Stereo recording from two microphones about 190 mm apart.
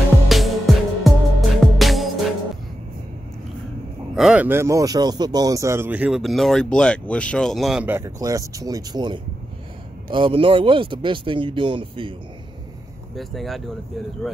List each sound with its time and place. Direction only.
0.3 s music: centre (ahead or behind)
4.1 s speech: 5° right (ahead or behind); by 12.1 s 25° right (ahead or behind)
13.1 s speech: centre (ahead or behind)